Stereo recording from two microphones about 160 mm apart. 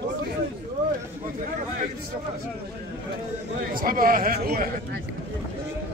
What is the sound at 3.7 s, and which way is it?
Speech, 60° right (ahead or behind).